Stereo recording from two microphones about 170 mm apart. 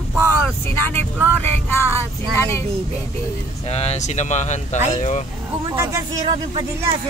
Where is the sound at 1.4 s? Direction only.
15° left (ahead or behind).